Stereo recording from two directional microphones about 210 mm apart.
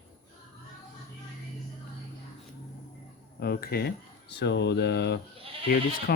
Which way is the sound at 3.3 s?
50° left (ahead or behind).